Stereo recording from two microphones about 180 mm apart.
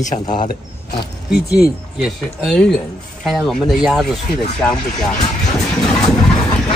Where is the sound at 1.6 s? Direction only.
Centre (ahead or behind).